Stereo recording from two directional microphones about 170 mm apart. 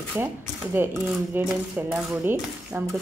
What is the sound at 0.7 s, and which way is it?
Speech, 15° right (ahead or behind).